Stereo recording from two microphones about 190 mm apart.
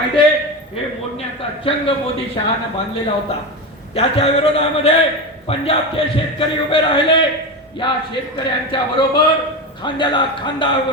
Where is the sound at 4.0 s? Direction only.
35° left (ahead or behind).